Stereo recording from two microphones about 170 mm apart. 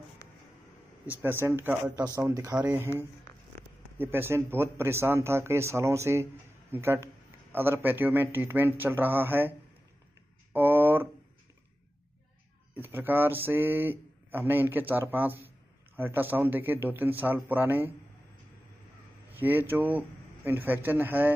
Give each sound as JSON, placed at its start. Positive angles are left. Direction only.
{"t": 1.0, "sound": "speech", "side_deg": -15}
{"t": 10.5, "sound": "a sound", "side_deg": -10}
{"t": 12.7, "sound": "speech", "side_deg": -10}
{"t": 19.4, "sound": "speech", "side_deg": -10}